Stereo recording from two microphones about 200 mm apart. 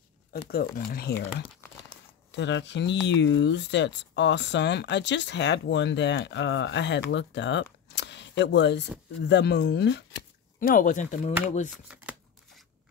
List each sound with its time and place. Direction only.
0.3 s speech: 50° left (ahead or behind)
1.9 s speech: 65° left (ahead or behind)
10.6 s speech: 45° left (ahead or behind)
11.7 s shuffling cards: 5° right (ahead or behind)